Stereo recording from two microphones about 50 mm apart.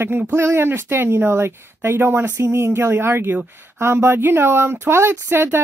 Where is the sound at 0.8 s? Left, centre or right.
Right.